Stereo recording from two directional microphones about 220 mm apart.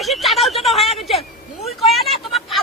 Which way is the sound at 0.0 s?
Centre (ahead or behind).